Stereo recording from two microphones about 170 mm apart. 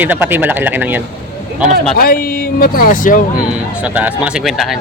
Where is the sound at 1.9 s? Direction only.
60° left (ahead or behind).